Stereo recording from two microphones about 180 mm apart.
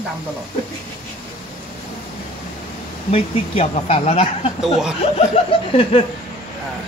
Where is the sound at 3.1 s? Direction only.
35° left (ahead or behind).